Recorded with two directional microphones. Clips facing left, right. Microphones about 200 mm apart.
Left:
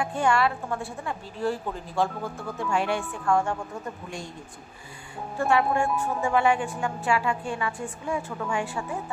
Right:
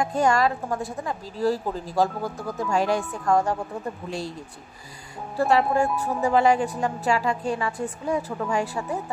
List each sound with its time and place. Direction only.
0.0 s a woman's voice: 40° right (ahead or behind)
5.4 s a woman's voice: 35° right (ahead or behind)